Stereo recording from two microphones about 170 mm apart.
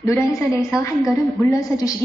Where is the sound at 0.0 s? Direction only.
20° left (ahead or behind).